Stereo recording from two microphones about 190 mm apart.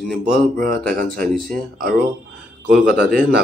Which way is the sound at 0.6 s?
50° right (ahead or behind).